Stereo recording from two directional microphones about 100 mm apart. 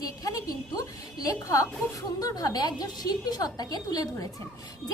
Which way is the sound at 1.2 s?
35° left (ahead or behind).